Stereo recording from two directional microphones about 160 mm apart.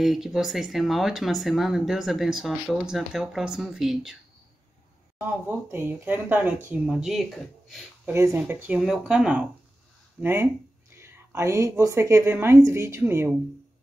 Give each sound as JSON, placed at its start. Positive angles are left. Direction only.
{"t": 0.0, "sound": "speech", "side_deg": 0}
{"t": 5.2, "sound": "speech", "side_deg": -15}
{"t": 8.1, "sound": "speech", "side_deg": -15}